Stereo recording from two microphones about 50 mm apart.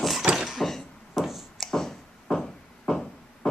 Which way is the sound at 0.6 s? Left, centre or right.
Centre.